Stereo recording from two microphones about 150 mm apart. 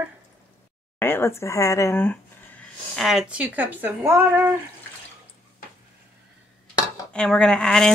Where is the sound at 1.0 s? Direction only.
15° left (ahead or behind).